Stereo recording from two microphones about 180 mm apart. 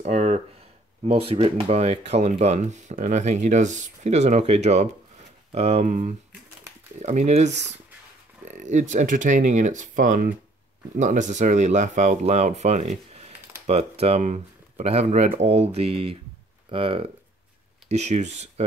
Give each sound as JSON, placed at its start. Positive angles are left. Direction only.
{"t": 0.0, "sound": "speech", "side_deg": -40}